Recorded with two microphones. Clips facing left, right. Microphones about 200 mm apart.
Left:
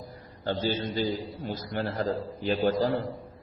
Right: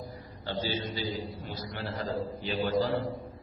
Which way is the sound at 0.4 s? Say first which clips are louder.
Left 4 dB; 45° left (ahead or behind).